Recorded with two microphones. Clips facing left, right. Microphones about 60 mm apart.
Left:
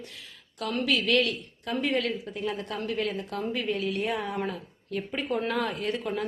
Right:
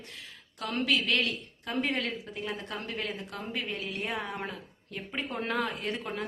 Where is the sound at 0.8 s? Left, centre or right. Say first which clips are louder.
Left 4 dB; right.